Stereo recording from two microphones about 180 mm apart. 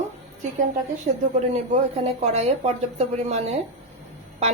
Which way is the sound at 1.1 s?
55° right (ahead or behind).